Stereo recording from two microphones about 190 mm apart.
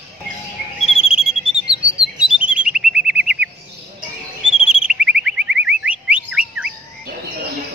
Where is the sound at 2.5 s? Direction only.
5° right (ahead or behind).